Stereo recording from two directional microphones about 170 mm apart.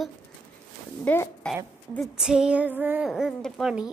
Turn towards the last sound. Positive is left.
turn(degrees=-5)  # may be behind; listen again after turning